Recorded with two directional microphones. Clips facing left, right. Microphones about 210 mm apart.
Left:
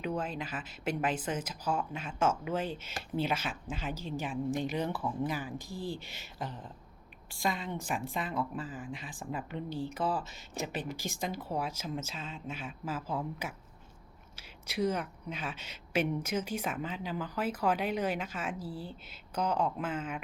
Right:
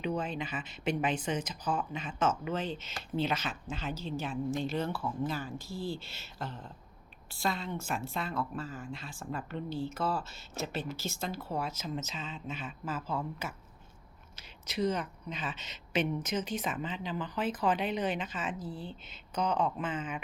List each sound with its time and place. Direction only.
0.0 s speech: 5° left (ahead or behind)
14.7 s speech: 10° left (ahead or behind)